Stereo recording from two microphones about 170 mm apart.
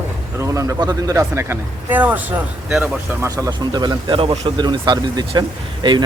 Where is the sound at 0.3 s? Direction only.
20° right (ahead or behind).